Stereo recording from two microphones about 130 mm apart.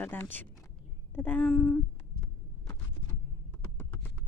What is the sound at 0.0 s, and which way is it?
Speech, 15° left (ahead or behind).